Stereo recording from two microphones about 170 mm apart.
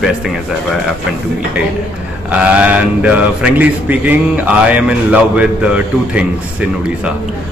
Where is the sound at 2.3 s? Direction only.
5° right (ahead or behind).